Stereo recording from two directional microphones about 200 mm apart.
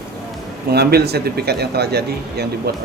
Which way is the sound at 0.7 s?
55° right (ahead or behind).